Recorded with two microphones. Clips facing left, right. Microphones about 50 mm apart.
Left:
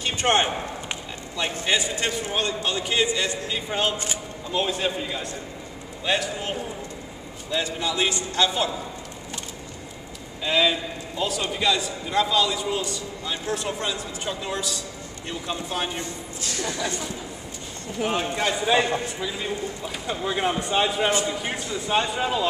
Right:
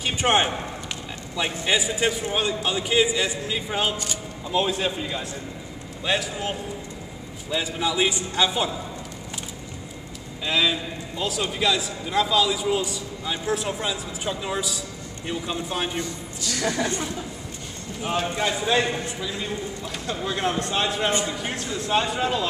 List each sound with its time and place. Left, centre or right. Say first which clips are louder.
0.0 s a man's voice: even; centre
7.5 s a man's voice: right 1 dB; centre
10.4 s a man's voice: left 1 dB; centre
16.0 s a man's voice: right 2 dB; left
16.5 s speech: right 5 dB; right
18.5 s a man's voice: left 3 dB; centre